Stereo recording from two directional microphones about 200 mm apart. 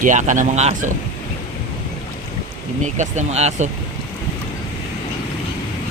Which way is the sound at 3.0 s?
35° right (ahead or behind).